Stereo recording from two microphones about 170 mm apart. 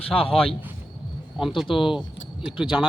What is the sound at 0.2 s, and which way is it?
Speech, 35° left (ahead or behind).